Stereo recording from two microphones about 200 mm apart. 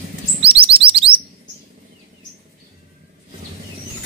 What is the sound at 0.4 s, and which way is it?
Chirp, 25° right (ahead or behind).